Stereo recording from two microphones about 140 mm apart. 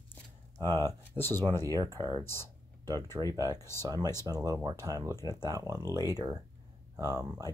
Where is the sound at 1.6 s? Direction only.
25° right (ahead or behind).